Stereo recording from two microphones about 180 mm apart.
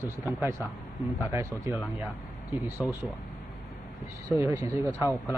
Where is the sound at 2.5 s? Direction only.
15° left (ahead or behind).